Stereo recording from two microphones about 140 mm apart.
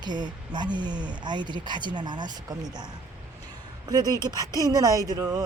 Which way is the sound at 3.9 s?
30° right (ahead or behind).